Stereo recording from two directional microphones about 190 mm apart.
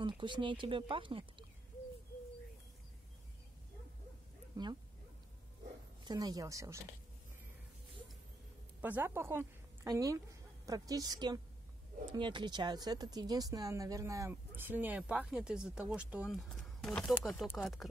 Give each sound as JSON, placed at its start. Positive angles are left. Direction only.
{"t": 0.2, "sound": "speech", "side_deg": -25}
{"t": 6.0, "sound": "speech", "side_deg": -20}
{"t": 8.8, "sound": "a woman's voice", "side_deg": -10}